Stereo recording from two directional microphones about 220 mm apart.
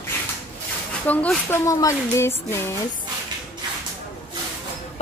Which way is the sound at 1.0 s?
10° left (ahead or behind).